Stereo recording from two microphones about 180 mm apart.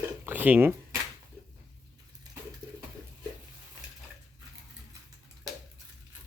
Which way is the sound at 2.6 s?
20° right (ahead or behind).